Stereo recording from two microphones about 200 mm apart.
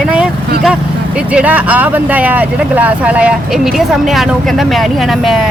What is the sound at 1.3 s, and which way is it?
Speech, 5° right (ahead or behind).